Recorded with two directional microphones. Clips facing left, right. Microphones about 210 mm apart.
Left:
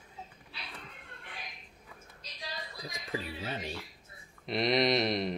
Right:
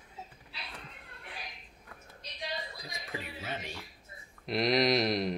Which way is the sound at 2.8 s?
35° left (ahead or behind).